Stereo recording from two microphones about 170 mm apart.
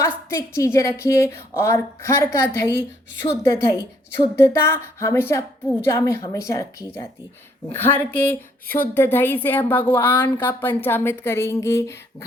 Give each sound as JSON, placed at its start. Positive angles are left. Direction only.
{"t": 0.0, "sound": "a woman's voice", "side_deg": 15}
{"t": 8.6, "sound": "a woman's voice", "side_deg": 55}
{"t": 9.0, "sound": "a woman's voice", "side_deg": 10}